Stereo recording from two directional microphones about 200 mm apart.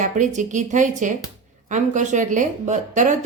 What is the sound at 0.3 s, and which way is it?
A woman's voice, 40° right (ahead or behind).